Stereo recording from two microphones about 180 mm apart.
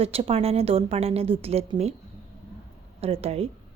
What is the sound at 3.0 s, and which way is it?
Speech, 35° right (ahead or behind).